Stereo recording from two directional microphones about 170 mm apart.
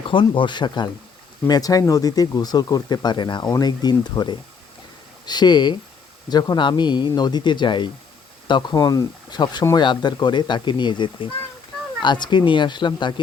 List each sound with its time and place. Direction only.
0.1 s speech: 30° left (ahead or behind)